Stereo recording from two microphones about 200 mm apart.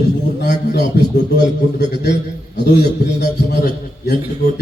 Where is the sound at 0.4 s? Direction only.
55° left (ahead or behind).